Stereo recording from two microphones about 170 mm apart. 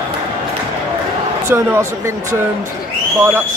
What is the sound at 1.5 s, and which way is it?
Speech, 15° right (ahead or behind).